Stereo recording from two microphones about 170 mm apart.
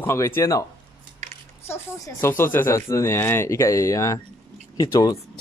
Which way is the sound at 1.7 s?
15° left (ahead or behind).